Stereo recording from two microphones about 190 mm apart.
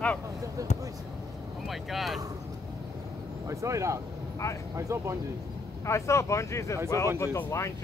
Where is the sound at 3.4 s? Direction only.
15° right (ahead or behind).